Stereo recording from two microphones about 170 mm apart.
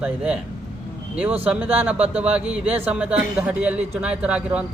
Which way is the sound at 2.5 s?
10° right (ahead or behind).